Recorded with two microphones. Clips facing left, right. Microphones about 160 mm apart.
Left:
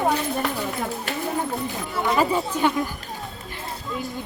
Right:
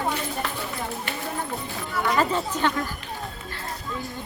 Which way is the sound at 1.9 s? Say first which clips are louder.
Left 1 dB; 25° left (ahead or behind).